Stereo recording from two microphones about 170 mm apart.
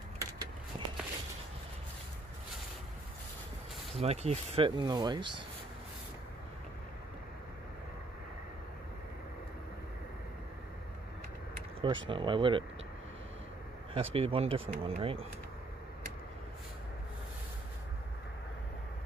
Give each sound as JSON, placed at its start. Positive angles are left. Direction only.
{"t": 0.2, "sound": "a sound", "side_deg": -25}
{"t": 3.9, "sound": "speech", "side_deg": -40}
{"t": 11.8, "sound": "speech", "side_deg": -30}
{"t": 13.9, "sound": "speech", "side_deg": -35}